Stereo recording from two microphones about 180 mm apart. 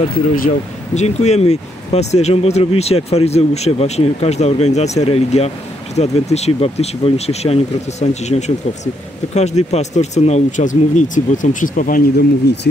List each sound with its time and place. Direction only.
0.3 s speech: 40° left (ahead or behind)